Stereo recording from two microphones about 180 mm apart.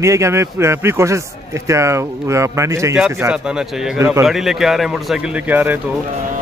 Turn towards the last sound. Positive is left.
turn(degrees=-10)  # may be behind; listen again after turning